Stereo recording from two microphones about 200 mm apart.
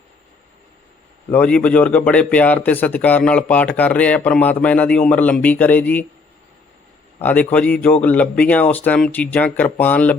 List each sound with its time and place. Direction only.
1.3 s a man's voice: 5° left (ahead or behind)
7.2 s a man's voice: 10° left (ahead or behind)